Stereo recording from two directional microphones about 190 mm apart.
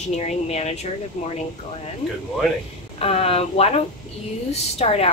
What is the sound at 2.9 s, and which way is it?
Speech, 30° left (ahead or behind).